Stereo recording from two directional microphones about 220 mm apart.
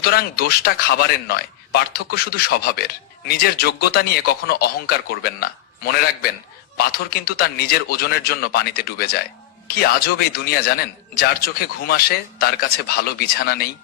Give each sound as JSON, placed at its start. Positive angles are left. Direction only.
{"t": 0.0, "sound": "a man's voice", "side_deg": 45}